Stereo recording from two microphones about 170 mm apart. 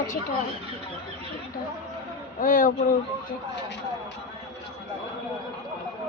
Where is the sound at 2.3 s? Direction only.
55° left (ahead or behind).